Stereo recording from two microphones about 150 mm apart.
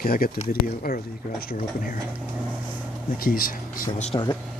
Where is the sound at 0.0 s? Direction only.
75° left (ahead or behind).